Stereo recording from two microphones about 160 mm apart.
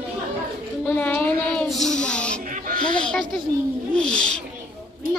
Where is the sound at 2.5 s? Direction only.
60° right (ahead or behind).